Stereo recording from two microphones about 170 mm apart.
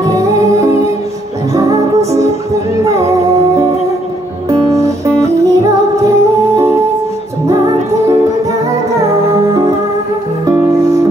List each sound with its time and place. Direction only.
0.0 s music: 20° right (ahead or behind)
9.3 s music: 20° right (ahead or behind)
10.8 s music: 20° right (ahead or behind)